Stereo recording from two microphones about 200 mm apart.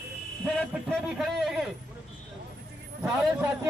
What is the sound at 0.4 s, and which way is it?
A man's voice, centre (ahead or behind).